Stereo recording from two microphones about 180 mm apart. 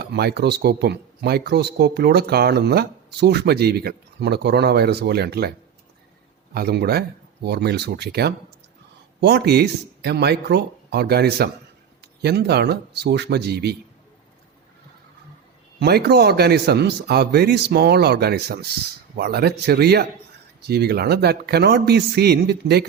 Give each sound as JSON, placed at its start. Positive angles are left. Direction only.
{"t": 0.0, "sound": "speech", "side_deg": -60}
{"t": 15.8, "sound": "speech", "side_deg": -65}